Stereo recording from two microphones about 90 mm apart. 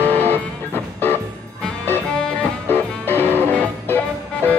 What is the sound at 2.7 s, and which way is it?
Music, 20° left (ahead or behind).